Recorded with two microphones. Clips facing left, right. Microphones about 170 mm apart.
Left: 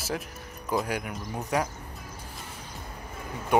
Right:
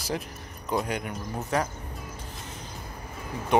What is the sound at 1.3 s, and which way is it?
Speech, 15° left (ahead or behind).